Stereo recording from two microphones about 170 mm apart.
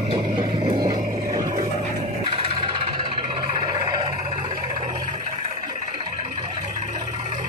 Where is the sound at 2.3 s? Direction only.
30° right (ahead or behind).